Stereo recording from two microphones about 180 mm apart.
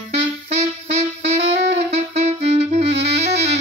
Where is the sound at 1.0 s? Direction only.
35° right (ahead or behind).